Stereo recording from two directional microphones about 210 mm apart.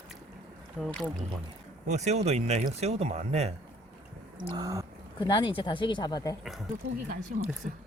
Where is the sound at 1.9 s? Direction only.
30° right (ahead or behind).